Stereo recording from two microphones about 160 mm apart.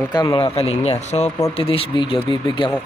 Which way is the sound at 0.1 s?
30° left (ahead or behind).